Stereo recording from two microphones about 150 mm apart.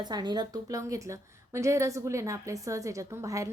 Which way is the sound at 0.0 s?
30° right (ahead or behind).